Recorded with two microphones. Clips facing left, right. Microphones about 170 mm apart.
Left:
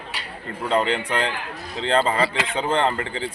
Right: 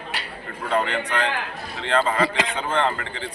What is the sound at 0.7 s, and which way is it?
Speech, 25° left (ahead or behind).